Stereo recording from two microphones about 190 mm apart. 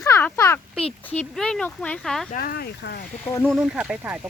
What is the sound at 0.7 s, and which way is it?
Speech, 5° left (ahead or behind).